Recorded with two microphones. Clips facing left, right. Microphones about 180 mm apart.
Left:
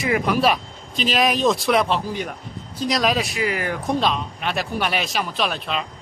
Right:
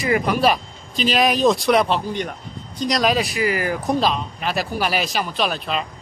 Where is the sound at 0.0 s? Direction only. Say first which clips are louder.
Right 1 dB; centre (ahead or behind).